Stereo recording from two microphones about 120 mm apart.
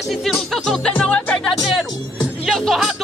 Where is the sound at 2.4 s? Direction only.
Centre (ahead or behind).